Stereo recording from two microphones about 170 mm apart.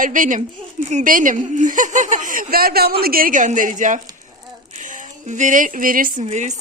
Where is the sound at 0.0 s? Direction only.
50° right (ahead or behind).